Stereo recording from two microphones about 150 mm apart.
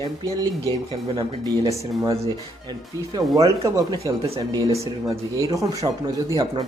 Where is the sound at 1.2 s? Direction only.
30° right (ahead or behind).